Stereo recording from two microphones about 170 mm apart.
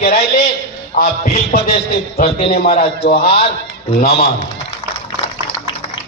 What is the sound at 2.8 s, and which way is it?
Speech, 35° left (ahead or behind).